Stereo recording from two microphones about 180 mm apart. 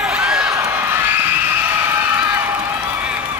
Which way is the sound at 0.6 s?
15° right (ahead or behind).